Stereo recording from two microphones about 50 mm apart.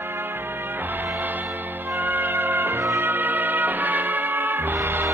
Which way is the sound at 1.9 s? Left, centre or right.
Right.